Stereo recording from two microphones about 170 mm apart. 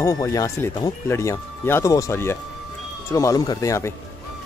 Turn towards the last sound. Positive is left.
turn(degrees=15)  # may be behind; listen again after turning